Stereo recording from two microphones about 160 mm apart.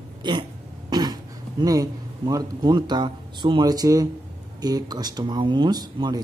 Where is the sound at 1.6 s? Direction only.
20° right (ahead or behind).